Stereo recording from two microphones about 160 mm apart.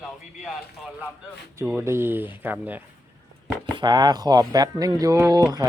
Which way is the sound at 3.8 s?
25° right (ahead or behind).